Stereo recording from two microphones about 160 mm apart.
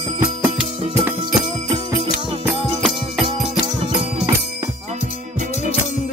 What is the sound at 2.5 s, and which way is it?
Music, centre (ahead or behind).